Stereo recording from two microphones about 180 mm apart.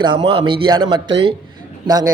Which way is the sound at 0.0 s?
25° right (ahead or behind).